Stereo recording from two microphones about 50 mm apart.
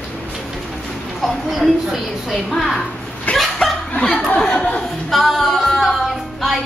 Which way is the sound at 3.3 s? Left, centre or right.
Left.